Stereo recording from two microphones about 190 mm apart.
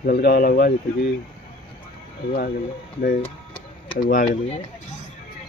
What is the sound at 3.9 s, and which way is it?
Speech, 50° left (ahead or behind).